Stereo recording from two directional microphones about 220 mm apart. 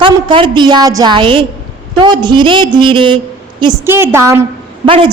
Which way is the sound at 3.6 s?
10° right (ahead or behind).